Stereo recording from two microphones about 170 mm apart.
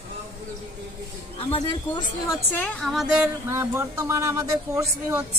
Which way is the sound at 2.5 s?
10° left (ahead or behind).